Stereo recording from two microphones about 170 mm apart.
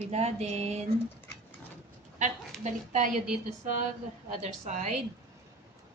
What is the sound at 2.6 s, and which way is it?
A woman's voice, 45° right (ahead or behind).